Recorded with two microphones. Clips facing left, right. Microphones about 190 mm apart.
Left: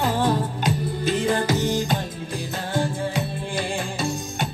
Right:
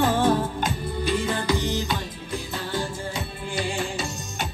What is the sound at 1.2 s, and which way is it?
Music, 45° left (ahead or behind).